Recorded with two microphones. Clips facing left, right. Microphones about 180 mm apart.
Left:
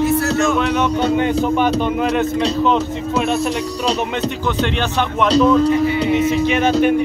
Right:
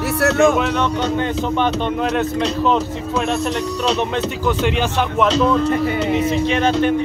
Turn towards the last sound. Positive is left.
turn(degrees=5)  # may be behind; listen again after turning